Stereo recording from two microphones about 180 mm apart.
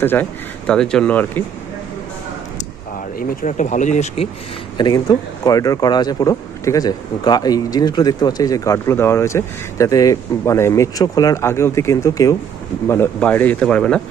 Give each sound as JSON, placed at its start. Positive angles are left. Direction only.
{"t": 0.0, "sound": "speech", "side_deg": 10}
{"t": 3.2, "sound": "speech", "side_deg": 45}
{"t": 4.7, "sound": "speech", "side_deg": 20}